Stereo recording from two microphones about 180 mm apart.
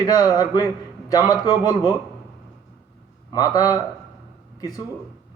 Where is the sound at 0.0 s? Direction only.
20° left (ahead or behind).